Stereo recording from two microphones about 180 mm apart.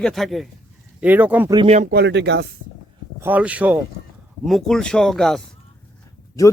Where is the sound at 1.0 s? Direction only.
10° right (ahead or behind).